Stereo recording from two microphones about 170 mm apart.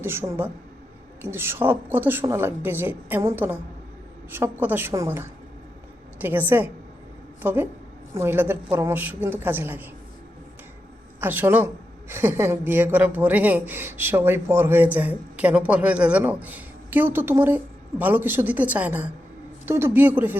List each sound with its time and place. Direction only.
0.0 s a woman's voice: 15° right (ahead or behind)
11.2 s a woman's voice: 10° right (ahead or behind)